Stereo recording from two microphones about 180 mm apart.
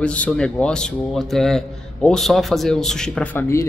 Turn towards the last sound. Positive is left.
turn(degrees=15)  # may be behind; listen again after turning